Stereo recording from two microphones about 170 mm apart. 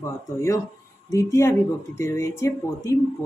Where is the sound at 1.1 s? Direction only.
15° left (ahead or behind).